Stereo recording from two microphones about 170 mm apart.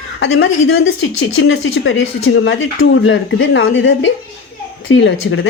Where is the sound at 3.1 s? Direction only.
90° left.